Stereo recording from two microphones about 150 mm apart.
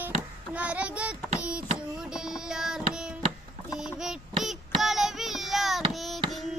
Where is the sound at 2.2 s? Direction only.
5° right (ahead or behind).